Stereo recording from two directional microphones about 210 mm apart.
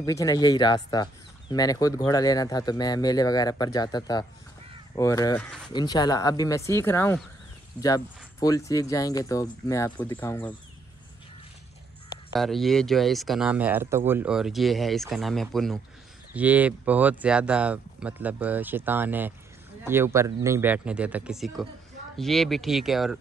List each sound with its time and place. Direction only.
0.0 s speech: 15° left (ahead or behind)
5.7 s speech: 20° left (ahead or behind)
12.4 s speech: centre (ahead or behind)